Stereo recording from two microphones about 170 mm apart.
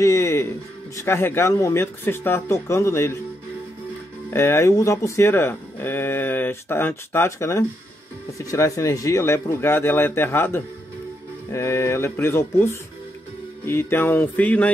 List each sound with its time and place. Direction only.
0.0 s speech: 15° left (ahead or behind)
4.3 s speech: 15° left (ahead or behind)